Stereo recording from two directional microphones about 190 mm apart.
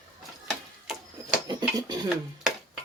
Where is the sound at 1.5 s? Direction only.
20° right (ahead or behind).